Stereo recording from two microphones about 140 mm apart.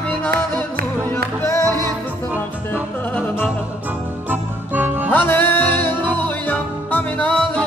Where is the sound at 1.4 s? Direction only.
20° left (ahead or behind).